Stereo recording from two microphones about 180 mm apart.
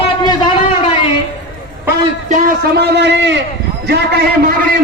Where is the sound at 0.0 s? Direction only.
30° left (ahead or behind).